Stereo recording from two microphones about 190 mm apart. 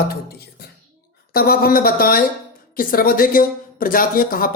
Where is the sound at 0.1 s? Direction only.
55° left (ahead or behind).